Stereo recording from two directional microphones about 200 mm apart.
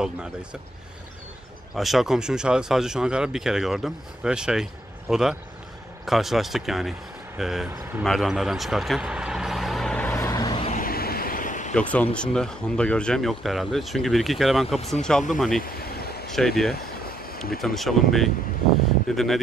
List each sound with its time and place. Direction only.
0.0 s speech: 5° right (ahead or behind)
1.8 s speech: centre (ahead or behind)
10.2 s vehicle: 20° left (ahead or behind)
10.7 s waves: 45° left (ahead or behind)
11.7 s speech: 5° left (ahead or behind)
15.6 s vehicle: 50° left (ahead or behind)
16.3 s speech: centre (ahead or behind)